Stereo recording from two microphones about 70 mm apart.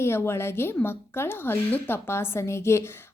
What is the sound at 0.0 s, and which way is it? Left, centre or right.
Speech, left.